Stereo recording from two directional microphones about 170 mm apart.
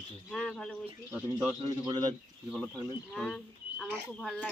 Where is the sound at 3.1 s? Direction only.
5° left (ahead or behind).